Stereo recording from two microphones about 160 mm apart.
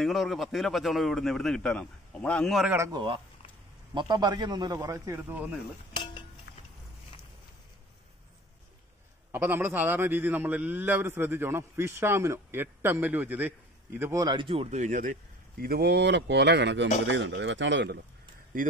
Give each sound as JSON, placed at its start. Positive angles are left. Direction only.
{"t": 0.0, "sound": "a man's voice", "side_deg": 0}
{"t": 2.7, "sound": "a man's voice", "side_deg": -20}
{"t": 9.3, "sound": "a man's voice", "side_deg": -15}
{"t": 15.6, "sound": "speech", "side_deg": -75}